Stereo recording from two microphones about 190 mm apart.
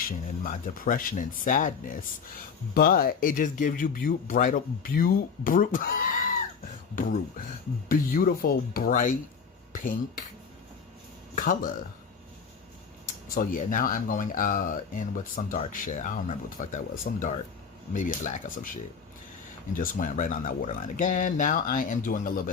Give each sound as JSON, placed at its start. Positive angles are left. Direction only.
{"t": 0.0, "sound": "speech", "side_deg": 45}
{"t": 11.3, "sound": "speech", "side_deg": 45}
{"t": 13.3, "sound": "speech", "side_deg": 45}
{"t": 17.9, "sound": "speech", "side_deg": 40}
{"t": 19.7, "sound": "speech", "side_deg": 45}